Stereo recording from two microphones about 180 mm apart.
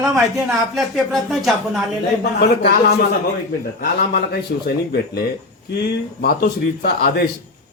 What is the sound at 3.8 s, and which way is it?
A man's voice, 60° left (ahead or behind).